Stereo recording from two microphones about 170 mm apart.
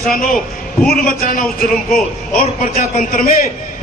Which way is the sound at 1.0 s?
55° left (ahead or behind).